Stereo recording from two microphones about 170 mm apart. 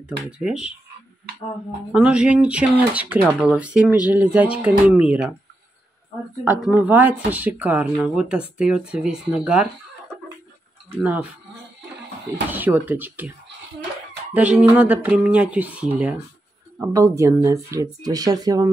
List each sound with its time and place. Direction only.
0.2 s speech: 5° right (ahead or behind)
1.9 s speech: 5° right (ahead or behind)
6.4 s speech: 10° right (ahead or behind)
11.0 s speech: 10° right (ahead or behind)
12.4 s speech: 10° right (ahead or behind)
14.3 s speech: 10° right (ahead or behind)